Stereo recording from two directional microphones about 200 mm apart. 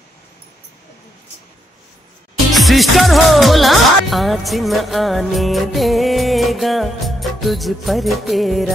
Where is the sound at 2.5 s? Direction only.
Centre (ahead or behind).